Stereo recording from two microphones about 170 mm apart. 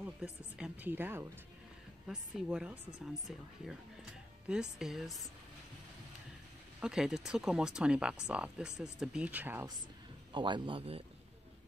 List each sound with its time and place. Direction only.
0.0 s speech: 5° right (ahead or behind)
4.5 s speech: 5° right (ahead or behind)
6.8 s speech: 5° right (ahead or behind)
10.3 s speech: 25° right (ahead or behind)